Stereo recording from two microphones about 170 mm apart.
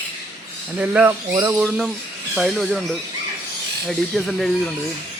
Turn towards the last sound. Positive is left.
turn(degrees=0)  # may be behind; listen again after turning